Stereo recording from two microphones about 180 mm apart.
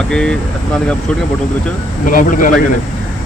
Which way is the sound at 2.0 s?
45° left (ahead or behind).